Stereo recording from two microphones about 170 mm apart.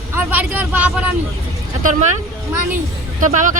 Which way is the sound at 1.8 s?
45° right (ahead or behind).